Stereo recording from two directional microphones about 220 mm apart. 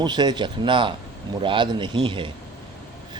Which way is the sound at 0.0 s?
20° right (ahead or behind).